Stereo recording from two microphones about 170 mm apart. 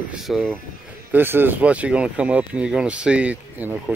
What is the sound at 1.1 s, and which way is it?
Speech, 10° right (ahead or behind).